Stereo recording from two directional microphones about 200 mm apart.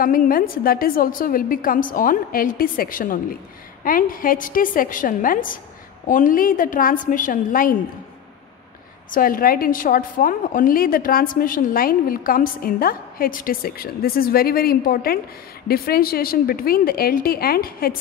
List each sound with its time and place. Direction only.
0.0 s a woman's voice: 45° left (ahead or behind)
9.1 s a woman's voice: 45° left (ahead or behind)